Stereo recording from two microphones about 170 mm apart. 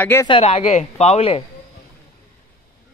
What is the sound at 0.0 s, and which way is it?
Speech, 15° left (ahead or behind).